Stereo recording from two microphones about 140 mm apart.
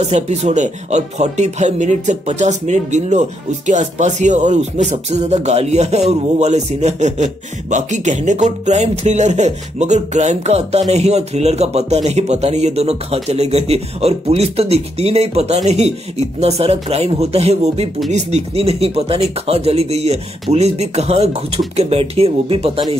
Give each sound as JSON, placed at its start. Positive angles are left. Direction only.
{"t": 0.0, "sound": "speech", "side_deg": -50}
{"t": 7.7, "sound": "music", "side_deg": -60}